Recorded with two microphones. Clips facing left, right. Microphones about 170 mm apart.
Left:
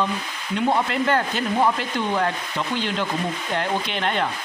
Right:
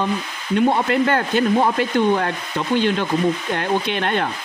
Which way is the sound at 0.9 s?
55° right (ahead or behind).